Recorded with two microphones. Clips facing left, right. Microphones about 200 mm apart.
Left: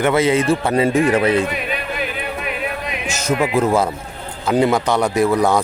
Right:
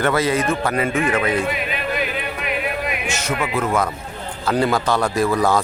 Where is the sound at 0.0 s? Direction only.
20° left (ahead or behind).